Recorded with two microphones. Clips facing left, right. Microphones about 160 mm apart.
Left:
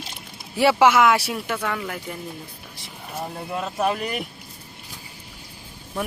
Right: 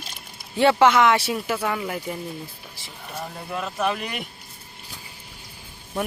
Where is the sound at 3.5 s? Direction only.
30° left (ahead or behind).